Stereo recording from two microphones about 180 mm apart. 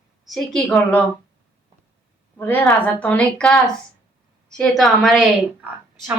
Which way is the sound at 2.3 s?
10° left (ahead or behind).